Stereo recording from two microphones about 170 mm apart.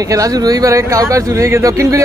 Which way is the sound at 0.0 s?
20° right (ahead or behind).